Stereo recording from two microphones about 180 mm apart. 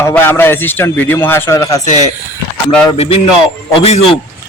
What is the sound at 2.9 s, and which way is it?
A man's voice, 35° left (ahead or behind).